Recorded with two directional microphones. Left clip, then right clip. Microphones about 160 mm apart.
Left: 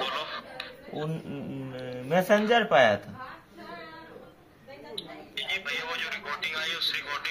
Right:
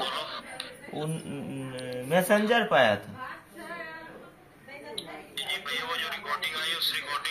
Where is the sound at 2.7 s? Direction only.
40° left (ahead or behind).